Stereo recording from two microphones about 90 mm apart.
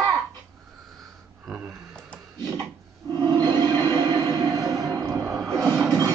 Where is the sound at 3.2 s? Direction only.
45° right (ahead or behind).